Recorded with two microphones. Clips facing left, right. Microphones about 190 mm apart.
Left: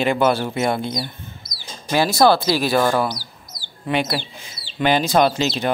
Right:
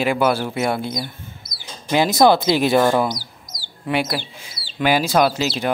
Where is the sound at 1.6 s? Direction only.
20° right (ahead or behind).